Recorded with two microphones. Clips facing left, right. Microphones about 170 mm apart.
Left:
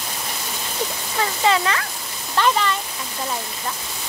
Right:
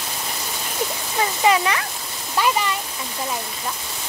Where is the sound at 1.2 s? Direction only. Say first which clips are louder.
Right 1 dB; 15° right (ahead or behind).